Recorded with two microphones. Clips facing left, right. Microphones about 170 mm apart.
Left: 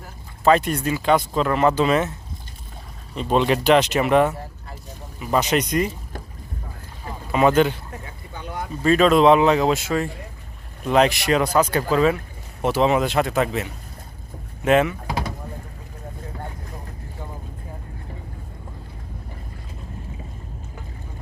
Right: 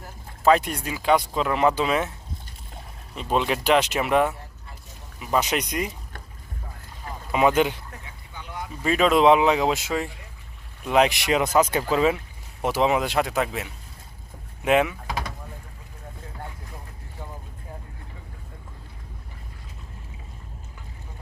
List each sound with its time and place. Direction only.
0.4 s speech: 10° right (ahead or behind)
3.2 s speech: 5° right (ahead or behind)
7.3 s speech: 10° right (ahead or behind)
8.0 s boat: 50° left (ahead or behind)
8.8 s speech: 10° right (ahead or behind)
10.8 s speech: 10° right (ahead or behind)
11.5 s speech: 20° right (ahead or behind)